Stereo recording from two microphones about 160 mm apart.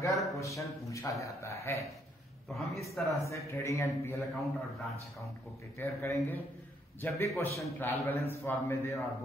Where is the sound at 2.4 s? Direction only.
Centre (ahead or behind).